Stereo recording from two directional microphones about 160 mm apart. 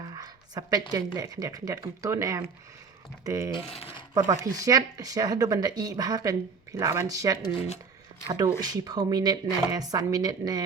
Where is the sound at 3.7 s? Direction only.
35° left (ahead or behind).